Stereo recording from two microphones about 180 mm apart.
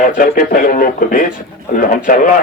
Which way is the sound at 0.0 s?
50° left (ahead or behind).